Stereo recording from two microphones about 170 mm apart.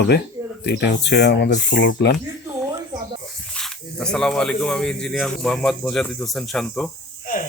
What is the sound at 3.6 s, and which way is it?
Speech, 5° left (ahead or behind).